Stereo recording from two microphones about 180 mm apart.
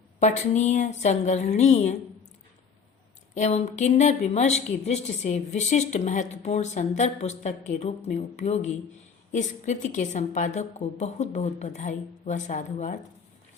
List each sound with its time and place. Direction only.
0.2 s a woman's voice: 40° left (ahead or behind)
3.3 s a woman's voice: 40° left (ahead or behind)